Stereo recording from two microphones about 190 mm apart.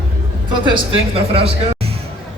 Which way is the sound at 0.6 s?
25° right (ahead or behind).